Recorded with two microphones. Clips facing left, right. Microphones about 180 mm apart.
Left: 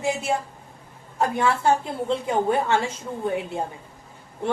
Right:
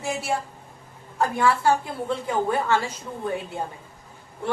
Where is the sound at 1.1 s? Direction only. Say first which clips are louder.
Even; 25° left (ahead or behind).